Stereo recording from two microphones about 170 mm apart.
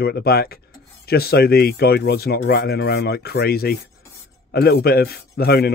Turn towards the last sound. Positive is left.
turn(degrees=65)  # may be behind; listen again after turning